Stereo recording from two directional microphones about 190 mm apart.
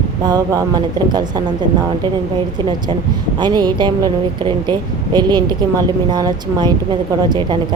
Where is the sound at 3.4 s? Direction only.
20° right (ahead or behind).